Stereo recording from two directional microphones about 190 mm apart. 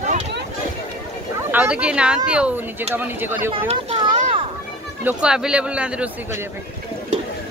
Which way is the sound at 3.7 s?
35° right (ahead or behind).